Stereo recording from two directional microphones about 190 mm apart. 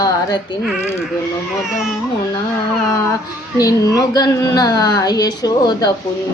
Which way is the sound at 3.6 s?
20° left (ahead or behind).